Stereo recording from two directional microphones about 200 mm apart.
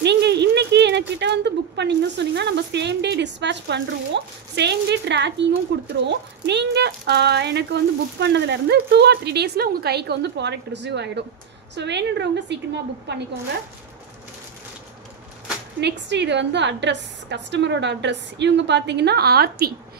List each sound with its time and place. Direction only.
0.0 s speech: 60° right (ahead or behind)
15.8 s speech: 60° right (ahead or behind)